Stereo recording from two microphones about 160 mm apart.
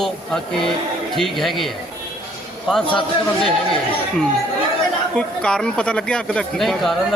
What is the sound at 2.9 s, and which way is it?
Speech, 30° left (ahead or behind).